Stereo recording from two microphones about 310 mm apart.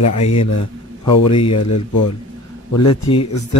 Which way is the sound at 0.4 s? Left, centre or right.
Centre.